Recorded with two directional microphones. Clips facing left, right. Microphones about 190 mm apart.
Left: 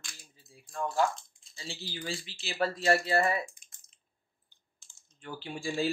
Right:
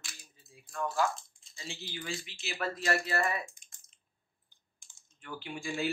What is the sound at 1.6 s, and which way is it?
Speech, 35° left (ahead or behind).